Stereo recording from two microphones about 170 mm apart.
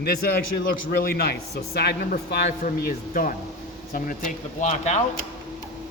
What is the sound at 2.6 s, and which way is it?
Speech, 55° left (ahead or behind).